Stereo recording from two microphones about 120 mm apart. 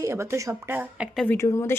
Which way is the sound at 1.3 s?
25° left (ahead or behind).